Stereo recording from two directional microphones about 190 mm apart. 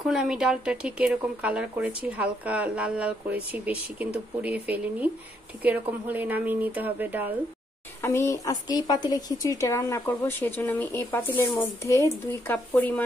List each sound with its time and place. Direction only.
0.0 s speech: 5° right (ahead or behind)
8.0 s a woman's voice: 15° left (ahead or behind)